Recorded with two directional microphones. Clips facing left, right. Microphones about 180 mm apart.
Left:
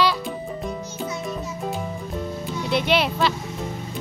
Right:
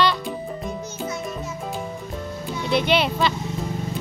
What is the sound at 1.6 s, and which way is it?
Music, centre (ahead or behind).